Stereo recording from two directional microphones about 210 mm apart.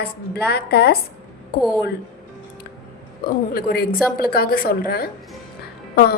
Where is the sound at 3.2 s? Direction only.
45° left (ahead or behind).